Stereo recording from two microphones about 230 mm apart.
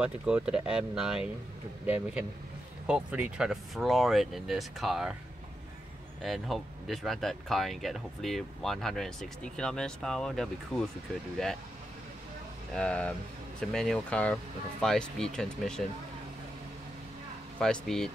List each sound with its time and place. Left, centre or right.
0.0 s speech: centre
6.2 s speech: centre
12.7 s speech: centre
17.6 s speech: centre